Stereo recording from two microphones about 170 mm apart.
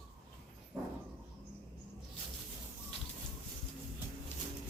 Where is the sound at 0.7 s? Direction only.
15° right (ahead or behind).